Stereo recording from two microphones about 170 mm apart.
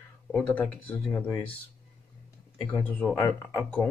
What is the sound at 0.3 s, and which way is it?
Speech, 5° left (ahead or behind).